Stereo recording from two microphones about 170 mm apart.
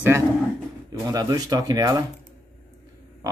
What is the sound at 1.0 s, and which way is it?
Speech, 20° right (ahead or behind).